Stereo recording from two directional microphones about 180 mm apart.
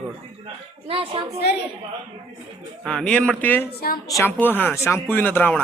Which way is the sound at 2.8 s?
5° left (ahead or behind).